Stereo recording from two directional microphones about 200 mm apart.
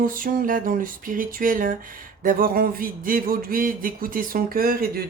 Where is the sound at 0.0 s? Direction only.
45° right (ahead or behind).